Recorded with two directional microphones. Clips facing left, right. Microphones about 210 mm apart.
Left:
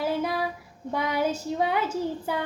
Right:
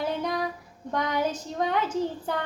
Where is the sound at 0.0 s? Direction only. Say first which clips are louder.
Left 1 dB; 5° left (ahead or behind).